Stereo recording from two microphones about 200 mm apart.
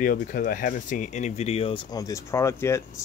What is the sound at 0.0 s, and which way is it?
Speech, 45° left (ahead or behind).